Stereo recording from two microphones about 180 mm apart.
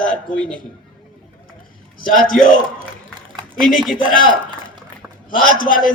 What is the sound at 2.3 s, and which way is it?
Speech, 50° left (ahead or behind).